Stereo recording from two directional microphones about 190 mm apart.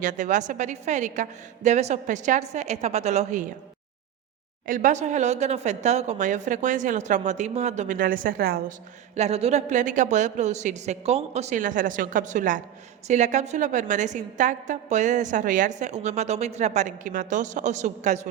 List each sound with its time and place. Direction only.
0.0 s a woman's voice: 40° right (ahead or behind)
4.6 s a woman's voice: 45° right (ahead or behind)
9.1 s a woman's voice: 35° right (ahead or behind)